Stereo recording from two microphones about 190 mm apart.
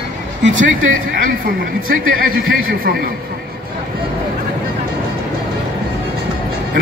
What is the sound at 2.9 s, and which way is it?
Speech, 50° right (ahead or behind).